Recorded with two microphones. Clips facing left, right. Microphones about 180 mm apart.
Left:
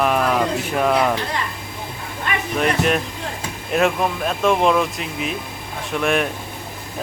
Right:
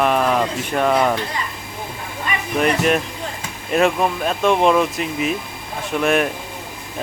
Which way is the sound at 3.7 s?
Centre (ahead or behind).